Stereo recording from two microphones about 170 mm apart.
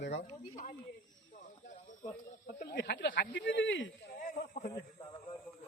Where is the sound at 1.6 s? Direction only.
45° left (ahead or behind).